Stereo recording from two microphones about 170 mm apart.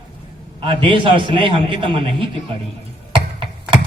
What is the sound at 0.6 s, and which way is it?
A man's voice, 30° right (ahead or behind).